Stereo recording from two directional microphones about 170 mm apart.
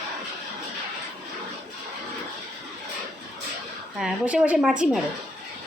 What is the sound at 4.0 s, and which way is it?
Speech, 5° right (ahead or behind).